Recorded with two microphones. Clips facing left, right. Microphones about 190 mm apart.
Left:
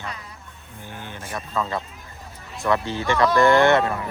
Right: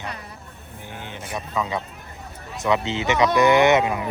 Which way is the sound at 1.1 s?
15° right (ahead or behind).